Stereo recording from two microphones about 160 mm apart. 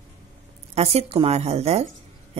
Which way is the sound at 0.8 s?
40° right (ahead or behind).